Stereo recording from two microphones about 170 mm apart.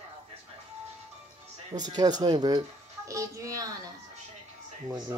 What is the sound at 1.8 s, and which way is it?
A woman's voice, 25° right (ahead or behind).